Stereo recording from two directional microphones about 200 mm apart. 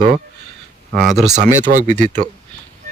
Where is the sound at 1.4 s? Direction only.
40° right (ahead or behind).